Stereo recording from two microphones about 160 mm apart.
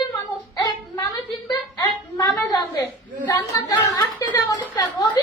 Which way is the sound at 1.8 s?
25° left (ahead or behind).